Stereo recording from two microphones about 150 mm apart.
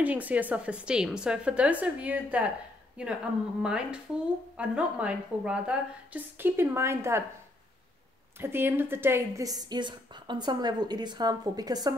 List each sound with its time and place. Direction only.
0.0 s a woman's voice: 10° right (ahead or behind)
8.4 s a woman's voice: 15° right (ahead or behind)